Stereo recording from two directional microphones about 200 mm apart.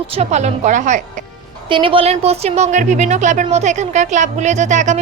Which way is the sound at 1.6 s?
25° right (ahead or behind).